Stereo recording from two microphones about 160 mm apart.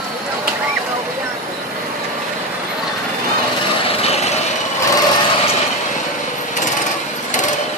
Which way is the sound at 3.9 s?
40° left (ahead or behind).